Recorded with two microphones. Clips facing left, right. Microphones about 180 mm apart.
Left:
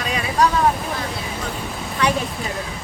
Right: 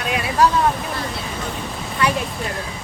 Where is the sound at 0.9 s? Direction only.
Centre (ahead or behind).